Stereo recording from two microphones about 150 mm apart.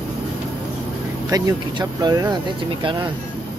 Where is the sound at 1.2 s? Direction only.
25° right (ahead or behind).